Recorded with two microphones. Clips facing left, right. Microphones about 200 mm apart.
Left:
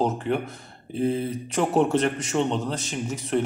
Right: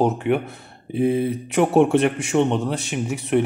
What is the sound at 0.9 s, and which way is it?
Speech, 70° right (ahead or behind).